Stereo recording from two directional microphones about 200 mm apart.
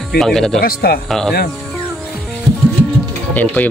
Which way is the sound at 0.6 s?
50° left (ahead or behind).